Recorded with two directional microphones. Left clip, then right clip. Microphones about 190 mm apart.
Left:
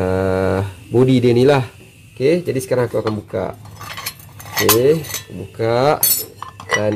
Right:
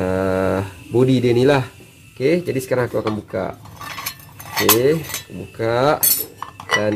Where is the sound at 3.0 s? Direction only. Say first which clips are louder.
Left 2 dB; 5° left (ahead or behind).